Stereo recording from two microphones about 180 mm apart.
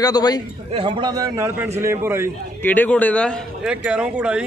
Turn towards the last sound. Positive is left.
turn(degrees=-5)  # may be behind; listen again after turning